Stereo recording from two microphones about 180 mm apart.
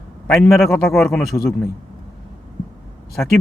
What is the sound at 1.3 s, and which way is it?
Speech, 15° left (ahead or behind).